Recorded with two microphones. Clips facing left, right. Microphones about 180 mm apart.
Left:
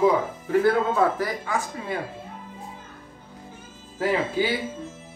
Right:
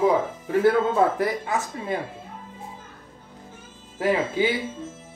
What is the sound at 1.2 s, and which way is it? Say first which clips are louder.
Speech: right 2 dB; 20° right (ahead or behind).